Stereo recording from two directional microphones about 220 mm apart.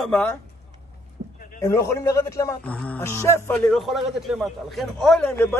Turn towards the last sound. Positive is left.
turn(degrees=5)  # may be behind; listen again after turning